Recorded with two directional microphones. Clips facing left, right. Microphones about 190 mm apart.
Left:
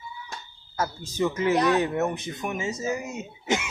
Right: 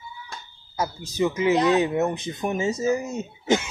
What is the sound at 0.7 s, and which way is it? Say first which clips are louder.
Speech: right 2 dB; 15° right (ahead or behind).